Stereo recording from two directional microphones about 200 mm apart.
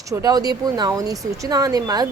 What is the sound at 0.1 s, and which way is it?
A woman's voice, 20° right (ahead or behind).